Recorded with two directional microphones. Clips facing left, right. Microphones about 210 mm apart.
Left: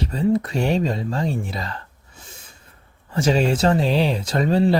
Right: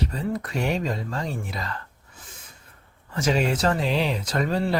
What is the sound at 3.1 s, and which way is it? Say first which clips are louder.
Speech: left 4 dB; 30° left (ahead or behind).